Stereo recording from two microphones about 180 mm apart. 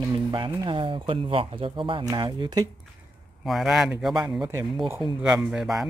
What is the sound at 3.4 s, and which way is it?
Speech, centre (ahead or behind).